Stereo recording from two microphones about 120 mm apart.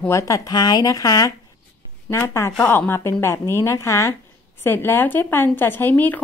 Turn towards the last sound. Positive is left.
turn(degrees=15)  # may be behind; listen again after turning